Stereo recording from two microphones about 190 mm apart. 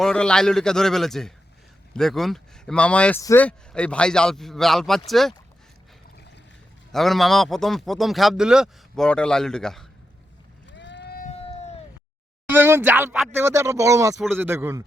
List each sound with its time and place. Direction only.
0.0 s speech: 5° left (ahead or behind)
6.9 s speech: centre (ahead or behind)
10.7 s boat: 70° left (ahead or behind)
11.3 s a sound: 35° left (ahead or behind)
12.5 s speech: 10° right (ahead or behind)